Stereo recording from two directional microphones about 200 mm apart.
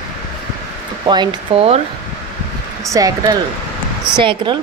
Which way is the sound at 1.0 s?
20° right (ahead or behind).